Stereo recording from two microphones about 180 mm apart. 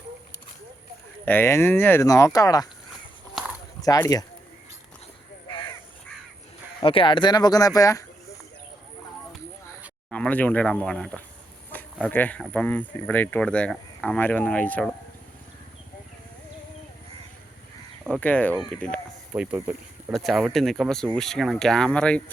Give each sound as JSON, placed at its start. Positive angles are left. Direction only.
{"t": 1.2, "sound": "speech", "side_deg": 10}
{"t": 3.8, "sound": "speech", "side_deg": 20}
{"t": 6.8, "sound": "speech", "side_deg": 30}
{"t": 10.1, "sound": "speech", "side_deg": 5}
{"t": 18.1, "sound": "speech", "side_deg": 10}
{"t": 19.3, "sound": "speech", "side_deg": -10}